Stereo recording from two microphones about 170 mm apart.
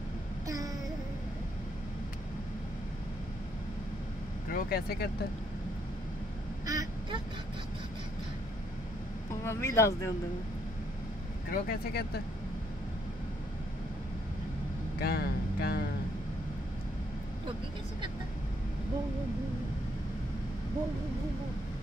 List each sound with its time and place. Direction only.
4.5 s speech: 60° left (ahead or behind)
6.6 s quack: 20° right (ahead or behind)
9.3 s speech: 15° left (ahead or behind)
11.5 s speech: 60° left (ahead or behind)
15.0 s a sound: 70° left (ahead or behind)